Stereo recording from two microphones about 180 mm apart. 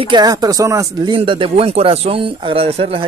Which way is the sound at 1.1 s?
30° right (ahead or behind).